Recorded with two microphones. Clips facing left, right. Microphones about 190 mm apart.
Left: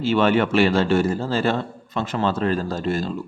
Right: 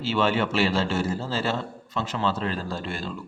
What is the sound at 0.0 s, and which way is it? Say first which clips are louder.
A man's voice: left 5 dB; 55° left (ahead or behind).